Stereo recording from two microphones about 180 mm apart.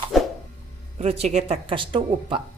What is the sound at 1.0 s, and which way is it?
Speech, 35° right (ahead or behind).